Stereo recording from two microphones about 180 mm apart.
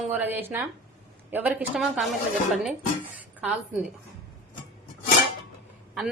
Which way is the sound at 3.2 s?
10° right (ahead or behind).